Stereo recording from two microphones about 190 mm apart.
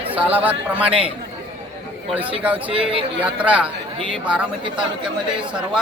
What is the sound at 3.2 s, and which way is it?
Speech, 5° right (ahead or behind).